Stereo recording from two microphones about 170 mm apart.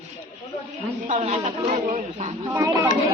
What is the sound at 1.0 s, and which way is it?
A man's voice, 45° right (ahead or behind).